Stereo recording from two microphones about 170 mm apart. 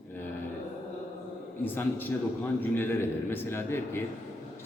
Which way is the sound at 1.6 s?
10° left (ahead or behind).